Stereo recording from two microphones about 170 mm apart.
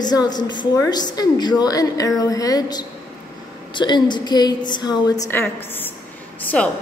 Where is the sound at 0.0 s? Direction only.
25° left (ahead or behind).